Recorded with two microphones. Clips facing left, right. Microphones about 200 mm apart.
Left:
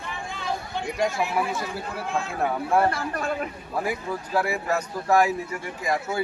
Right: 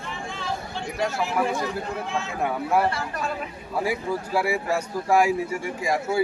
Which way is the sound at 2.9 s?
50° left (ahead or behind).